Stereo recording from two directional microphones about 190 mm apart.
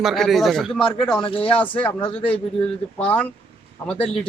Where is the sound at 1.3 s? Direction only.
30° left (ahead or behind).